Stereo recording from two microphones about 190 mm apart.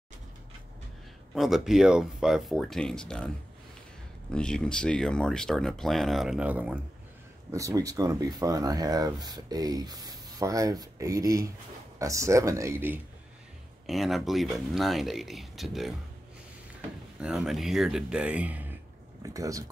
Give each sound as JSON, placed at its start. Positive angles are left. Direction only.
{"t": 1.3, "sound": "speech", "side_deg": 0}
{"t": 4.3, "sound": "speech", "side_deg": 5}
{"t": 13.8, "sound": "speech", "side_deg": 0}
{"t": 17.2, "sound": "speech", "side_deg": -5}